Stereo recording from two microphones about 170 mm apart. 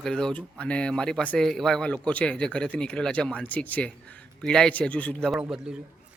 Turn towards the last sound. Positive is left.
turn(degrees=-5)  # may be behind; listen again after turning